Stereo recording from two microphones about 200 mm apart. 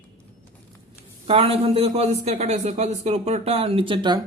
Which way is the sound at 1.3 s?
30° right (ahead or behind).